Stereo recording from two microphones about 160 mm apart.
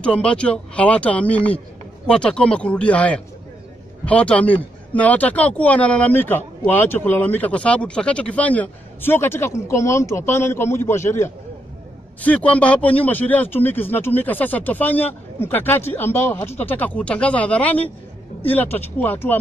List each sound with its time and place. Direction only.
0.0 s speech: 5° left (ahead or behind)